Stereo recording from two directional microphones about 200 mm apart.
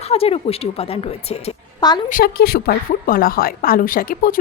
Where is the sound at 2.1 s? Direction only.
45° left (ahead or behind).